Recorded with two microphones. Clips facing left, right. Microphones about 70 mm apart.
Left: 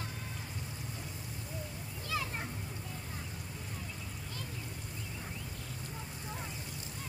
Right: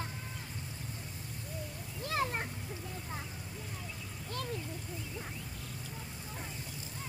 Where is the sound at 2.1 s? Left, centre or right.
Right.